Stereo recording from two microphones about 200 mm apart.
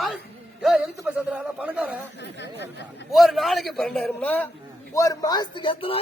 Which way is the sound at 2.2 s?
60° left (ahead or behind).